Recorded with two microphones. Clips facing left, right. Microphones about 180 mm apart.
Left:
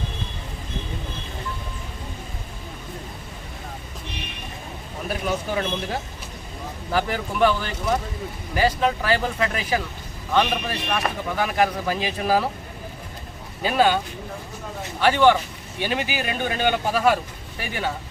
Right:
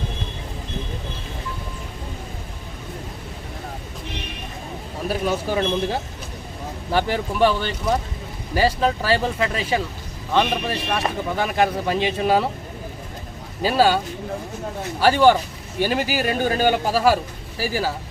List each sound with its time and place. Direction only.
5.5 s a man's voice: 30° right (ahead or behind)
13.6 s speech: 35° right (ahead or behind)
15.0 s speech: 35° right (ahead or behind)